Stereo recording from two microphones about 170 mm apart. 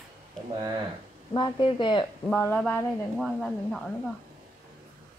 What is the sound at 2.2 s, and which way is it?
A woman's voice, 10° left (ahead or behind).